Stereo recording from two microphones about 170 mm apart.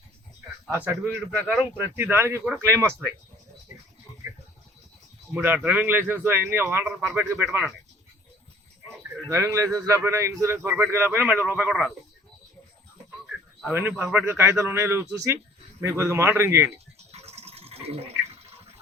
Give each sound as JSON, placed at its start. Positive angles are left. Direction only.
{"t": 0.9, "sound": "a man's voice", "side_deg": -15}
{"t": 5.3, "sound": "a man's voice", "side_deg": -10}
{"t": 9.3, "sound": "a man's voice", "side_deg": -15}
{"t": 13.7, "sound": "a man's voice", "side_deg": -10}
{"t": 16.7, "sound": "toothbrush", "side_deg": -40}